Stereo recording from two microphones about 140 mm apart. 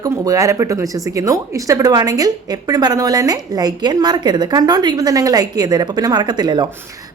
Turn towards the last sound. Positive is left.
turn(degrees=-30)  # may be behind; listen again after turning